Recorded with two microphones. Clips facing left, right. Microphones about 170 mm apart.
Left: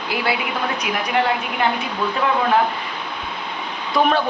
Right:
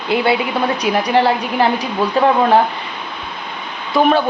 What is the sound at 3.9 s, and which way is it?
Speech, centre (ahead or behind).